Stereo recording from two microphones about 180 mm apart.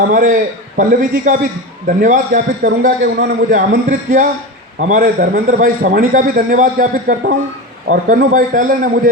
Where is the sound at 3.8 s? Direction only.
45° right (ahead or behind).